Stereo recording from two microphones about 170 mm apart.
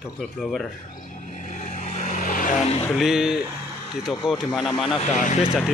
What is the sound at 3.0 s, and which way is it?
Speech, 5° right (ahead or behind).